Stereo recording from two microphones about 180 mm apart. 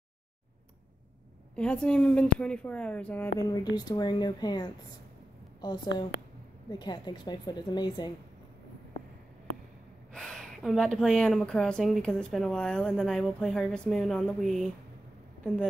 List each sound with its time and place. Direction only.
1.5 s speech: 5° left (ahead or behind)
3.3 s a woman's voice: 20° left (ahead or behind)
6.7 s a woman's voice: 25° left (ahead or behind)
10.1 s speech: centre (ahead or behind)